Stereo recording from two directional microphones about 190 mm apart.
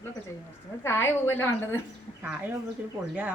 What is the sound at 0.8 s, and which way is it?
Speech, 15° left (ahead or behind).